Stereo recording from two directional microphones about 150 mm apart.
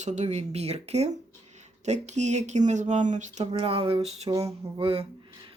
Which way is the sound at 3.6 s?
40° right (ahead or behind).